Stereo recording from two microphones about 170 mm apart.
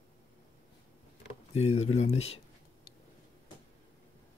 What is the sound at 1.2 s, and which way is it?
Speech, 35° left (ahead or behind).